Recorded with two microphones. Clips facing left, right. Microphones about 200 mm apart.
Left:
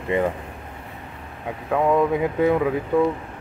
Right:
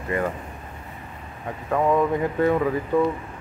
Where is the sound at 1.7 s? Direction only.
5° left (ahead or behind).